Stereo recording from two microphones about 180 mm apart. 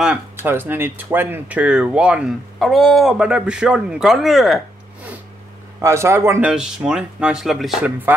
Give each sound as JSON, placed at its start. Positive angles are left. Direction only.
{"t": 0.0, "sound": "speech", "side_deg": -10}
{"t": 5.8, "sound": "speech", "side_deg": -15}
{"t": 6.5, "sound": "speech", "side_deg": -5}